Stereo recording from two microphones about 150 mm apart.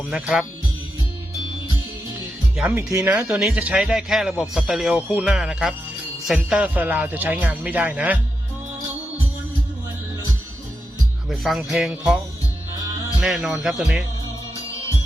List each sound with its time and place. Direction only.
0.1 s speech: 5° right (ahead or behind)
2.7 s speech: 20° right (ahead or behind)
3.1 s speech: 10° right (ahead or behind)
11.3 s speech: centre (ahead or behind)